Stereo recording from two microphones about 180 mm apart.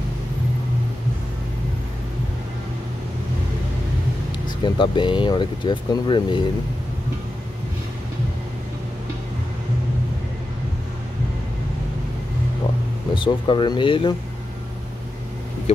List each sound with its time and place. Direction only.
4.5 s speech: 25° left (ahead or behind)
13.1 s speech: 25° left (ahead or behind)